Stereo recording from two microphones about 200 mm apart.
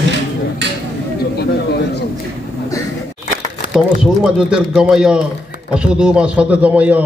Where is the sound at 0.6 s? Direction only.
60° right (ahead or behind).